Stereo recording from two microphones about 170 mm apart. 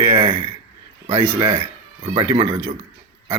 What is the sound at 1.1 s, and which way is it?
Speech, 35° right (ahead or behind).